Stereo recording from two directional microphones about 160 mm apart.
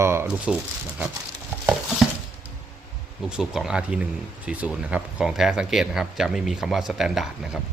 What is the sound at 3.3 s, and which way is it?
Speech, 5° right (ahead or behind).